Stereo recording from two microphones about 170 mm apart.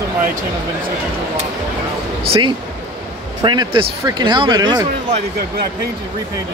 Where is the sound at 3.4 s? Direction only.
25° right (ahead or behind).